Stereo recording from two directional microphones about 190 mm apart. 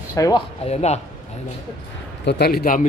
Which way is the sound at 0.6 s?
35° left (ahead or behind).